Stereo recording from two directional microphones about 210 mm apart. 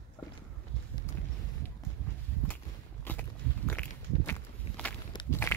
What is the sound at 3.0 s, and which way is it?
Walk, 10° left (ahead or behind).